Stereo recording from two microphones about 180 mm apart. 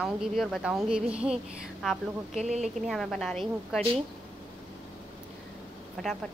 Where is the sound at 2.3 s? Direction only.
40° right (ahead or behind).